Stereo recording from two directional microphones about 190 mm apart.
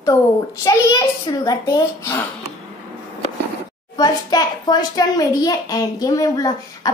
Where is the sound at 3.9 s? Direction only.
20° left (ahead or behind).